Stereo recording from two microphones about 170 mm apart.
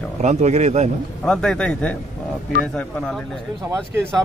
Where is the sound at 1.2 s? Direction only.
5° left (ahead or behind).